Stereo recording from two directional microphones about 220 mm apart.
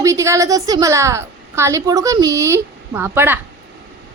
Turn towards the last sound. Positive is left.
turn(degrees=-10)  # may be behind; listen again after turning